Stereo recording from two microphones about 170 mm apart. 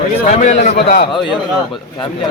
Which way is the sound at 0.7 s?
65° left (ahead or behind).